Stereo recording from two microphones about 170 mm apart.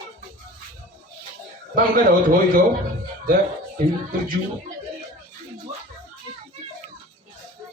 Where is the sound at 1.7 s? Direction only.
60° right (ahead or behind).